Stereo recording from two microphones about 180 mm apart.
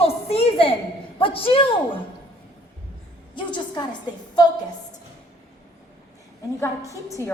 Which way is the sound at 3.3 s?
25° left (ahead or behind).